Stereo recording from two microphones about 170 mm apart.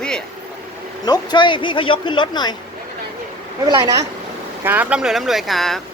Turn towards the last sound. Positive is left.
turn(degrees=0)  # may be behind; listen again after turning